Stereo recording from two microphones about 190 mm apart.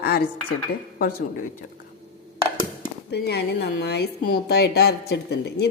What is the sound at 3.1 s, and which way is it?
A woman's voice, 60° left (ahead or behind).